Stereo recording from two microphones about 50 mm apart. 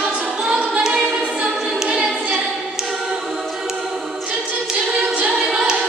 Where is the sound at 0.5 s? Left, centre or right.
Centre.